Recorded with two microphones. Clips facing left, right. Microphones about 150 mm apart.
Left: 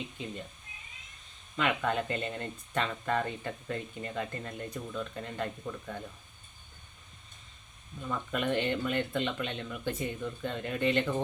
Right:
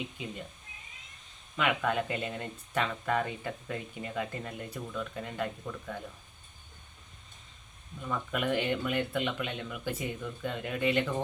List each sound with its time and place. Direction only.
0.2 s speech: 10° right (ahead or behind)
1.5 s speech: 5° right (ahead or behind)
8.1 s speech: 5° right (ahead or behind)